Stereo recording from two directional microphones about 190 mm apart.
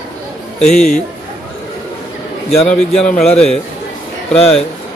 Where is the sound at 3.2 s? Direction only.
5° left (ahead or behind).